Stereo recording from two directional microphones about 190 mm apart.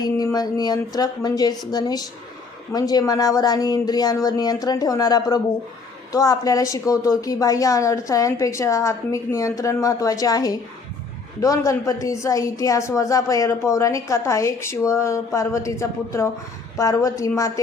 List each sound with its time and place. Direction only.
0.0 s a woman's voice: 20° left (ahead or behind)